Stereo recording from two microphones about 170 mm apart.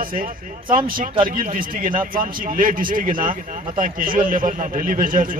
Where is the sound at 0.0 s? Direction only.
55° right (ahead or behind).